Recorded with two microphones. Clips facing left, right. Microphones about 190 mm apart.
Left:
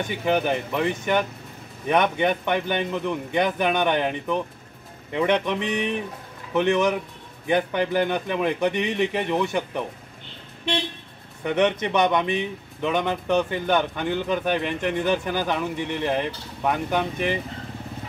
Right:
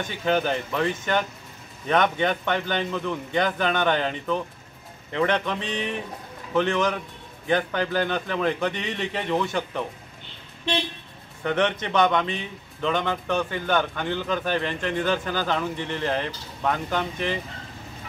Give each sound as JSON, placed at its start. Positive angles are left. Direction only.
{"t": 0.1, "sound": "speech", "side_deg": 15}
{"t": 11.4, "sound": "speech", "side_deg": 15}